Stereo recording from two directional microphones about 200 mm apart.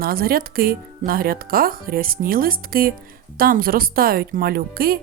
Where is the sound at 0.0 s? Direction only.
50° right (ahead or behind).